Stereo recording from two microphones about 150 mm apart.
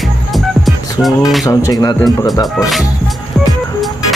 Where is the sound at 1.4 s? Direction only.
25° left (ahead or behind).